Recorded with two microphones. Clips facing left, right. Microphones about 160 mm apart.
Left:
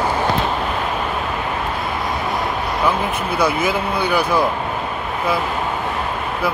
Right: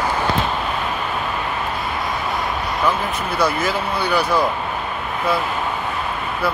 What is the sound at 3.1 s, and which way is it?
Speech, 55° left (ahead or behind).